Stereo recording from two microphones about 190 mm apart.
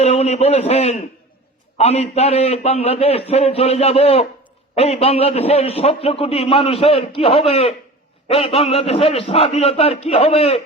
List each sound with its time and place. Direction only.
0.0 s a man's voice: 35° left (ahead or behind)